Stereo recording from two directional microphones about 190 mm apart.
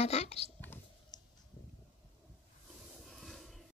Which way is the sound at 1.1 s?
20° left (ahead or behind).